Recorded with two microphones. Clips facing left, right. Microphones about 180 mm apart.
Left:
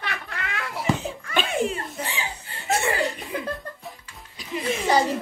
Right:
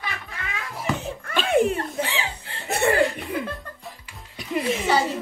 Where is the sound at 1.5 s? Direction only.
55° right (ahead or behind).